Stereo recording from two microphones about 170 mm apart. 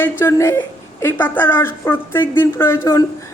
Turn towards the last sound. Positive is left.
turn(degrees=15)  # may be behind; listen again after turning